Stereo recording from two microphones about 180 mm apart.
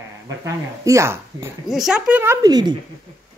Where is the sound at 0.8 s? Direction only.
15° right (ahead or behind).